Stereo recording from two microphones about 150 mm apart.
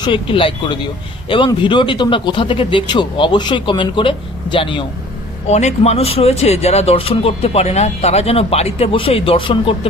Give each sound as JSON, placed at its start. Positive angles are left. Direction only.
{"t": 0.0, "sound": "speech", "side_deg": 35}
{"t": 5.5, "sound": "speech", "side_deg": 50}